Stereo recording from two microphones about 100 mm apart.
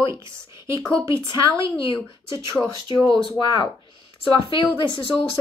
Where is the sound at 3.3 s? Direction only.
45° left (ahead or behind).